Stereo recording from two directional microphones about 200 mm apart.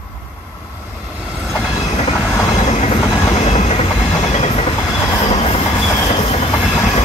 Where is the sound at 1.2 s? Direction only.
5° right (ahead or behind).